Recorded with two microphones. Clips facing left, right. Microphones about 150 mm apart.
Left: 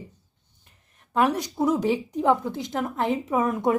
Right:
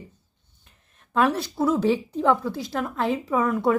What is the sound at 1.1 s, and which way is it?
A woman's voice, 15° left (ahead or behind).